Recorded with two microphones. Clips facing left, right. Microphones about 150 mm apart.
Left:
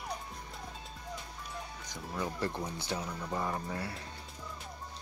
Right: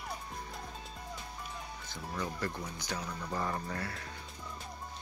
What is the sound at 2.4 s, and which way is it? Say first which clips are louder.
Speech: left 3 dB; 25° left (ahead or behind).